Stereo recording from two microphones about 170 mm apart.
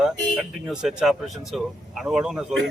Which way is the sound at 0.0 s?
5° right (ahead or behind).